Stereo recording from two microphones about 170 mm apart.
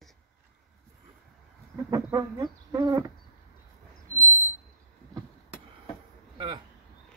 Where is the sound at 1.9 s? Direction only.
20° right (ahead or behind).